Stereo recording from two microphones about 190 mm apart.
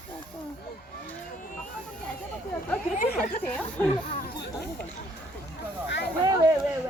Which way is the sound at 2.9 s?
45° left (ahead or behind).